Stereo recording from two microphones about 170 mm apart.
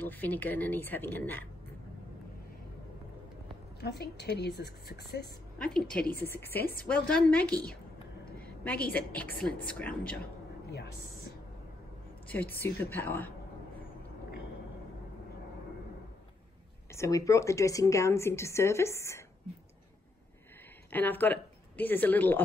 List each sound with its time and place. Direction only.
0.0 s speech: 10° left (ahead or behind)
3.8 s a woman's voice: 70° left (ahead or behind)
5.6 s a woman's voice: 5° left (ahead or behind)
6.6 s a woman's voice: 60° left (ahead or behind)
6.9 s speech: 10° left (ahead or behind)
8.9 s speech: 10° left (ahead or behind)
12.6 s speech: 10° left (ahead or behind)
16.9 s speech: 20° left (ahead or behind)
20.9 s speech: 10° left (ahead or behind)